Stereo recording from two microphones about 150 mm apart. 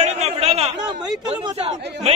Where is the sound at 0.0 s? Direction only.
45° right (ahead or behind).